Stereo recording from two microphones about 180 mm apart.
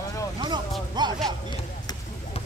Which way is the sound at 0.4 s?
25° right (ahead or behind).